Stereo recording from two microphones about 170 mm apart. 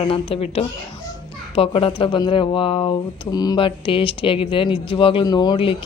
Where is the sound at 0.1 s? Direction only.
35° left (ahead or behind).